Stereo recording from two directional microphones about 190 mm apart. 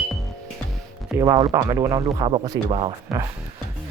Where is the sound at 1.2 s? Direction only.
20° right (ahead or behind).